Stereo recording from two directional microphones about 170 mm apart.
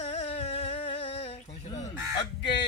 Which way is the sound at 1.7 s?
20° left (ahead or behind).